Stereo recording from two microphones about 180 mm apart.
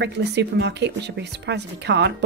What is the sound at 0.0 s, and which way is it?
Speech, 70° right (ahead or behind).